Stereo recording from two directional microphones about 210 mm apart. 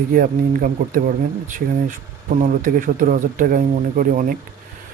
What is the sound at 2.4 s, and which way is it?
Speech, 40° right (ahead or behind).